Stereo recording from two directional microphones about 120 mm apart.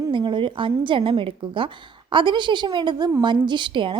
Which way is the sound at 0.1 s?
40° right (ahead or behind).